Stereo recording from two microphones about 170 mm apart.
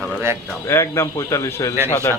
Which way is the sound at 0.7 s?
15° left (ahead or behind).